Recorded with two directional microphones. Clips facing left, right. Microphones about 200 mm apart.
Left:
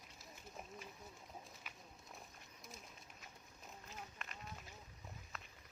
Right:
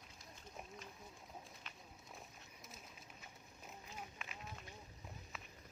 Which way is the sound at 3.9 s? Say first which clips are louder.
Right 1 dB; 5° right (ahead or behind).